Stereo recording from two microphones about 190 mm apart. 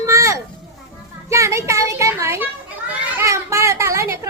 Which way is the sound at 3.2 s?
15° right (ahead or behind).